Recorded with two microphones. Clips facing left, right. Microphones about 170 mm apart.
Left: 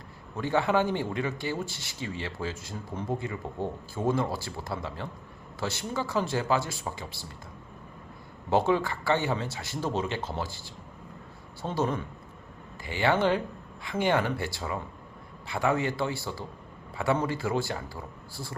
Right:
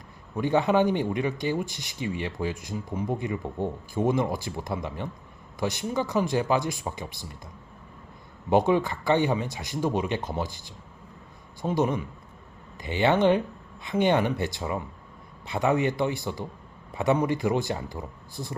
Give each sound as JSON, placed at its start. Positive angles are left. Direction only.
{"t": 0.3, "sound": "speech", "side_deg": -15}
{"t": 8.4, "sound": "speech", "side_deg": -15}
{"t": 11.6, "sound": "a man's voice", "side_deg": -15}